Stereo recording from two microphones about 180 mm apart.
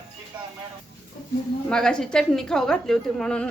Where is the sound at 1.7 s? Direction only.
5° left (ahead or behind).